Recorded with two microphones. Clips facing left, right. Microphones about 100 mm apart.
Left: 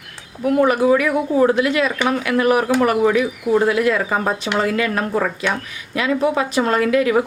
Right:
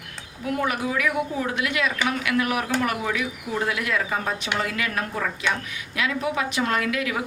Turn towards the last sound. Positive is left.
turn(degrees=35)  # may be behind; listen again after turning